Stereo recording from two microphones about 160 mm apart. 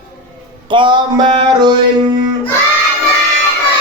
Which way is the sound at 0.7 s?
30° right (ahead or behind).